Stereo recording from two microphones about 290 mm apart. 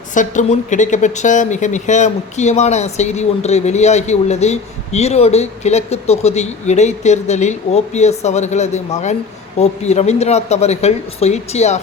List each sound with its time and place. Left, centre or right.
0.1 s a woman's voice: left